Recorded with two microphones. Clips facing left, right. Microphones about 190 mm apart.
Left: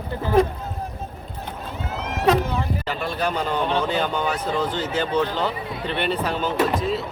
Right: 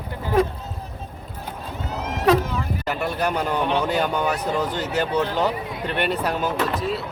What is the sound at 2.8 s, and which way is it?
Speech, 10° right (ahead or behind).